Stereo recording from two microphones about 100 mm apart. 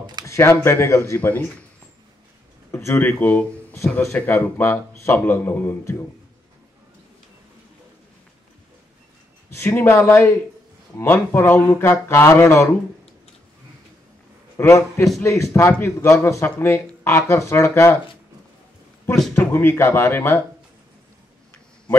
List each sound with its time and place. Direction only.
0.3 s a man's voice: 25° left (ahead or behind)
2.7 s a man's voice: 25° left (ahead or behind)
9.5 s a man's voice: 20° left (ahead or behind)
14.6 s a man's voice: 25° left (ahead or behind)
19.3 s a man's voice: 20° left (ahead or behind)